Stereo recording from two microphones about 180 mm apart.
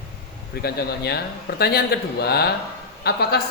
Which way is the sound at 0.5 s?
60° left (ahead or behind).